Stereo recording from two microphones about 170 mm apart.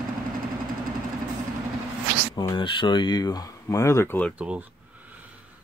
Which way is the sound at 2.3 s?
25° left (ahead or behind).